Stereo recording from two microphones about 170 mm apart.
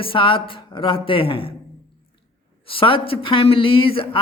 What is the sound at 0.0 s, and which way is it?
A woman's voice, 30° left (ahead or behind).